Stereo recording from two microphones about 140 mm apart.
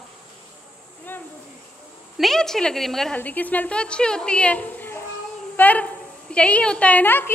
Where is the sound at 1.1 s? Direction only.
15° left (ahead or behind).